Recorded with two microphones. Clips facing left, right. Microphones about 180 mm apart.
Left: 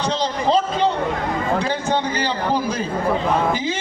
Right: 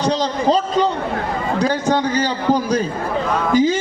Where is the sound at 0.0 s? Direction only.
40° right (ahead or behind).